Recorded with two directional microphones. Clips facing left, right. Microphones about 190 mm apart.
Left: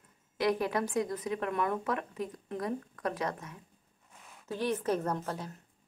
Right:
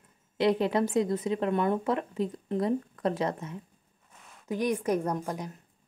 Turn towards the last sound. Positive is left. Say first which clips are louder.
# right 3 dB
turn(degrees=-15)  # may be behind; listen again after turning